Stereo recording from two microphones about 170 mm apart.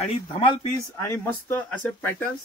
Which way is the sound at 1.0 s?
15° left (ahead or behind).